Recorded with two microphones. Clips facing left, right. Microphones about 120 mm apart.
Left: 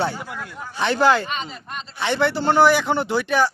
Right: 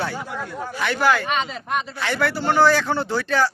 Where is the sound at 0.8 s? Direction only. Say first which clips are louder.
Left 3 dB; 25° left (ahead or behind).